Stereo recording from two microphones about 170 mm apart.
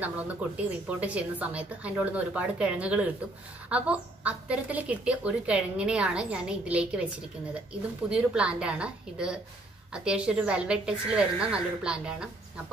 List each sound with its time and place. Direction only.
0.6 s a woman's voice: 10° right (ahead or behind)
8.1 s a woman's voice: 5° right (ahead or behind)